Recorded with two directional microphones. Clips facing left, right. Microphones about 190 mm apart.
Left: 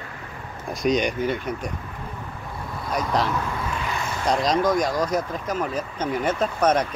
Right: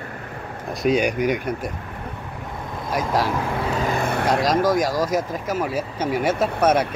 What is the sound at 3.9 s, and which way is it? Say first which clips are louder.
Vehicle: right 1 dB; 60° right (ahead or behind).